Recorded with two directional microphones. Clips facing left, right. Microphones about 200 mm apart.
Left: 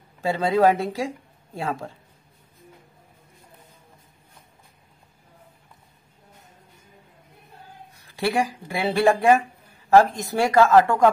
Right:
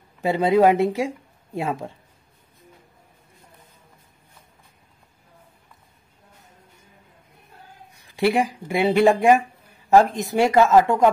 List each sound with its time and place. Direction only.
0.2 s speech: 20° right (ahead or behind)
8.2 s speech: 15° right (ahead or behind)